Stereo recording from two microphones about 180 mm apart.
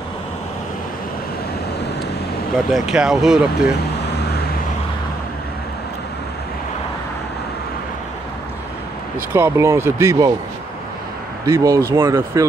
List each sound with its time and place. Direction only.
2.7 s speech: 5° right (ahead or behind)
9.3 s speech: 15° right (ahead or behind)
11.4 s speech: 15° right (ahead or behind)